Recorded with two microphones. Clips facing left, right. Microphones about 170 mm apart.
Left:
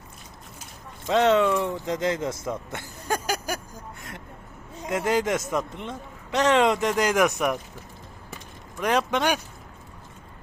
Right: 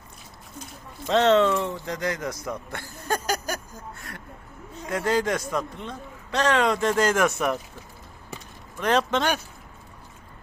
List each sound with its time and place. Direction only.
1.0 s a man's voice: 10° left (ahead or behind)
8.8 s speech: 10° left (ahead or behind)